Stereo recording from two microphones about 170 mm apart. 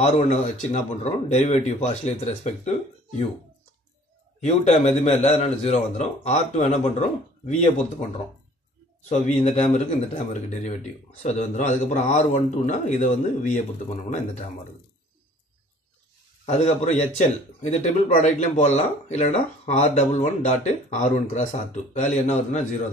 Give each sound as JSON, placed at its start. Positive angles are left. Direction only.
{"t": 0.0, "sound": "speech", "side_deg": 40}
{"t": 4.4, "sound": "speech", "side_deg": 40}
{"t": 9.1, "sound": "speech", "side_deg": 40}
{"t": 16.4, "sound": "speech", "side_deg": 40}